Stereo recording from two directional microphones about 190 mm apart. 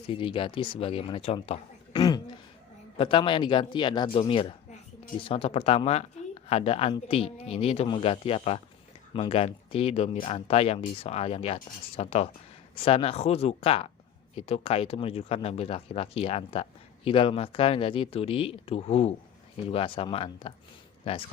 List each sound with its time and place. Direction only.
0.1 s speech: 25° left (ahead or behind)